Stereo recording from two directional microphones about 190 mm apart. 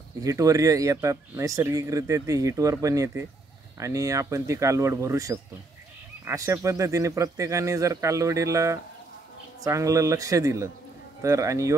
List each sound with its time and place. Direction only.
0.2 s speech: 15° right (ahead or behind)